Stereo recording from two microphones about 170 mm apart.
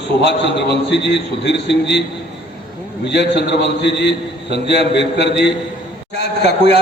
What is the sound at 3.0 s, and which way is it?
A man's voice, 90° left.